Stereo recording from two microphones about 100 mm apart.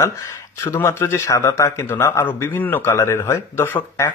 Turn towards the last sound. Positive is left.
turn(degrees=25)  # may be behind; listen again after turning